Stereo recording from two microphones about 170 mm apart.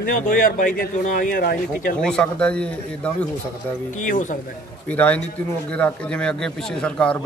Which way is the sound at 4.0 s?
50° left (ahead or behind).